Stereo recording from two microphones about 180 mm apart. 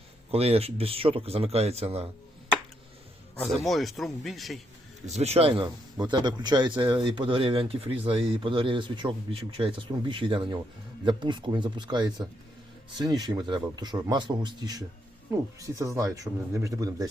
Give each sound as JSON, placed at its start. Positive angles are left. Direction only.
{"t": 0.3, "sound": "speech", "side_deg": -35}
{"t": 3.3, "sound": "a man's voice", "side_deg": 0}
{"t": 5.0, "sound": "speech", "side_deg": -35}